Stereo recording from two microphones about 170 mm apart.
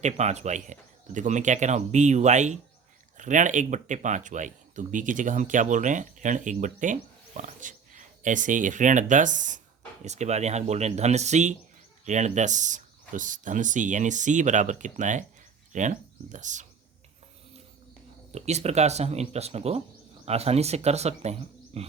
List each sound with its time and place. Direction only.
0.0 s speech: 40° right (ahead or behind)
18.3 s speech: 40° right (ahead or behind)
21.7 s wild animals: 40° right (ahead or behind)